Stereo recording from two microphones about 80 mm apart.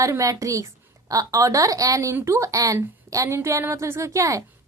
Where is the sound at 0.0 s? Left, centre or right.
Right.